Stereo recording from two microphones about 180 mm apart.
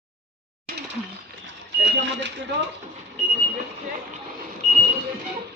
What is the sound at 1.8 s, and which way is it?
Speech, 80° right.